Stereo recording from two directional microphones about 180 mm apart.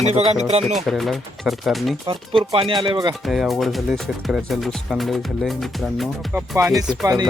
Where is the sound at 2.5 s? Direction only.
30° right (ahead or behind).